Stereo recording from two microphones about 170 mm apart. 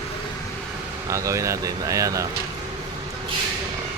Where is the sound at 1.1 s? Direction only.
20° right (ahead or behind).